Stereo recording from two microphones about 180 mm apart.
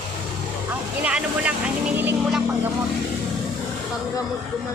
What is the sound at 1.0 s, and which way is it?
Speech, 5° right (ahead or behind).